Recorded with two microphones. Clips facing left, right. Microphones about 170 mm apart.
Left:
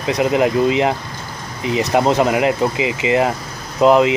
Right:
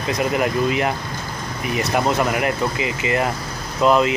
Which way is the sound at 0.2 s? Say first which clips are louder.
Left 5 dB; 20° left (ahead or behind).